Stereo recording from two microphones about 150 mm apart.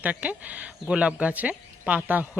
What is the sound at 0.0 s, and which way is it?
Speech, 10° right (ahead or behind).